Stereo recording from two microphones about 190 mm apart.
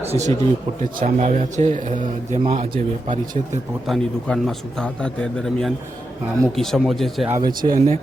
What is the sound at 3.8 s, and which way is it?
A man's voice, centre (ahead or behind).